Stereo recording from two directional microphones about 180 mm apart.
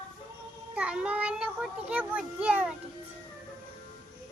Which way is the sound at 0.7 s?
5° right (ahead or behind).